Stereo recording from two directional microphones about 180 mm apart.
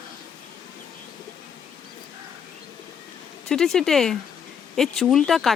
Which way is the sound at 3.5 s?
5° left (ahead or behind).